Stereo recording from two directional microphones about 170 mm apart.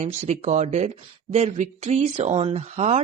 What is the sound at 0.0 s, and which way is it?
Speech, 40° right (ahead or behind).